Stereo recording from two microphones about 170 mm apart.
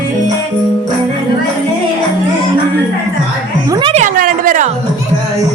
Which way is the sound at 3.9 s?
50° right (ahead or behind).